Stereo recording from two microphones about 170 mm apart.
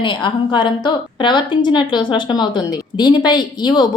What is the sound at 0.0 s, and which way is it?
A woman's voice, 30° left (ahead or behind).